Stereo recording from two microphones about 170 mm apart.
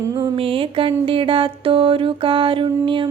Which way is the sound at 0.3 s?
30° right (ahead or behind).